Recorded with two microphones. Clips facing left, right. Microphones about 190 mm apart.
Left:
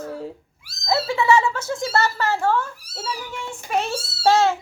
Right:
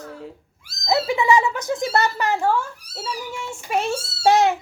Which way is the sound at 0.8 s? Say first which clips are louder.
Right 1 dB; 15° right (ahead or behind).